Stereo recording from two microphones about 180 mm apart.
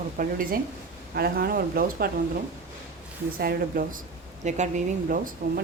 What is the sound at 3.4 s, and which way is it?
Speech, 55° right (ahead or behind).